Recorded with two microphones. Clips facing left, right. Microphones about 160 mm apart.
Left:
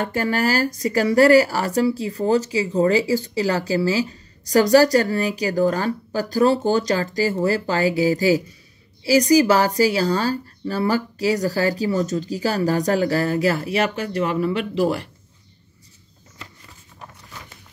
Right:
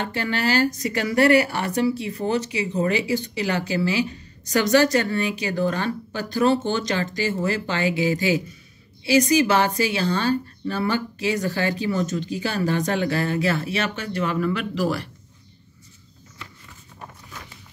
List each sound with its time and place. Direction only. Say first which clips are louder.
0.0 s speech: left 4 dB; 40° left (ahead or behind)